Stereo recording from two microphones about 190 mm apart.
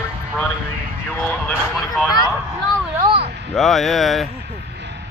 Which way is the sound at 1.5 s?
Centre (ahead or behind).